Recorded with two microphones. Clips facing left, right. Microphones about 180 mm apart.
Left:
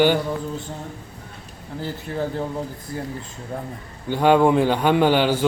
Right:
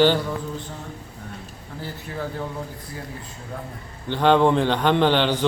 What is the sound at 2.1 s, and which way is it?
Speech, 40° left (ahead or behind).